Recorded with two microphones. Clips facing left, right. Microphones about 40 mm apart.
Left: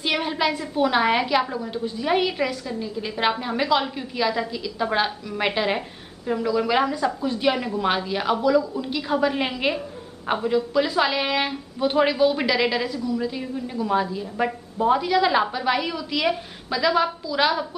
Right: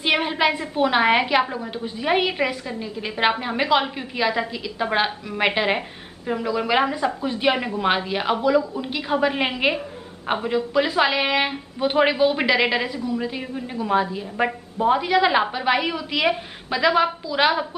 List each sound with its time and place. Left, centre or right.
0.0 s a woman's voice: right